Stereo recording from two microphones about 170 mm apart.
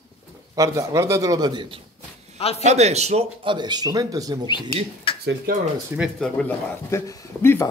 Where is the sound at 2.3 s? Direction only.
35° left (ahead or behind).